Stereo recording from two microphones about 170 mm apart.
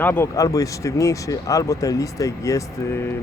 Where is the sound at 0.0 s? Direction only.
10° left (ahead or behind).